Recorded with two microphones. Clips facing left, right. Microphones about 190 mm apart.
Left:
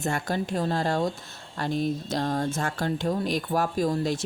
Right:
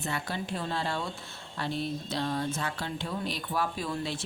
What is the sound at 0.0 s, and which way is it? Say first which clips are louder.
Speech: left 6 dB; 45° left (ahead or behind).